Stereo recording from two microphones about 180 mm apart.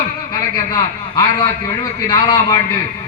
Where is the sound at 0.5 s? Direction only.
20° left (ahead or behind).